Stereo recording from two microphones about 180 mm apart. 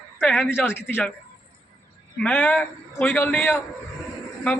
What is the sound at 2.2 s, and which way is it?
A man's voice, 10° left (ahead or behind).